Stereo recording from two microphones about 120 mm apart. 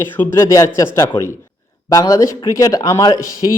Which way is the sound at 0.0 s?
20° left (ahead or behind).